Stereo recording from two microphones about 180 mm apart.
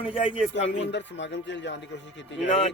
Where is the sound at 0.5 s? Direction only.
80° left.